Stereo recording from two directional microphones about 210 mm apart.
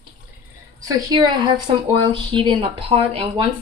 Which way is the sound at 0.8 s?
20° right (ahead or behind).